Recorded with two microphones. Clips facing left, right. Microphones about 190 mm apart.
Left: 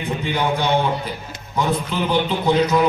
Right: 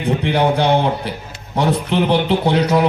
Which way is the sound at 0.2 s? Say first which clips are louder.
Right 4 dB; 70° right (ahead or behind).